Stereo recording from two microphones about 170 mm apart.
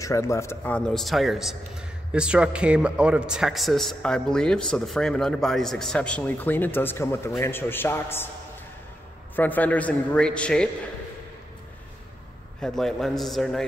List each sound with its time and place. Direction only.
0.0 s a man's voice: 15° left (ahead or behind)
9.3 s a man's voice: 10° left (ahead or behind)
12.5 s a man's voice: 5° left (ahead or behind)